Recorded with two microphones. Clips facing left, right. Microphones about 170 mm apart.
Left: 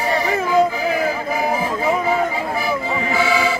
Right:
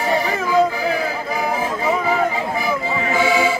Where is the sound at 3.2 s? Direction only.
20° right (ahead or behind).